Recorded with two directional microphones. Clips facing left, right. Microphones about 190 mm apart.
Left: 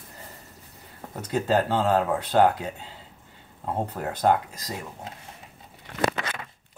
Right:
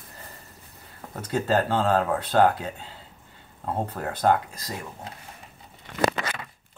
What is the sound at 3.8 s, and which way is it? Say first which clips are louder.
Speech: left 1 dB; 15° left (ahead or behind).